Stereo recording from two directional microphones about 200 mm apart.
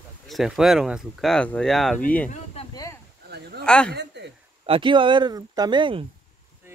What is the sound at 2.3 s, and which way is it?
Speech, 30° left (ahead or behind).